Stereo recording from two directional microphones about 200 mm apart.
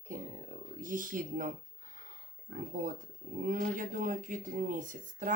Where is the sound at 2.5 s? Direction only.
40° right (ahead or behind).